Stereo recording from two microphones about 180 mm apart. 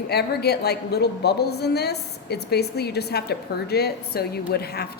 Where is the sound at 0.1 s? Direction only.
65° left (ahead or behind).